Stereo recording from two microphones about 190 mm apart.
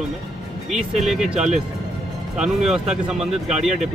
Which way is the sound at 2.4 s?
Centre (ahead or behind).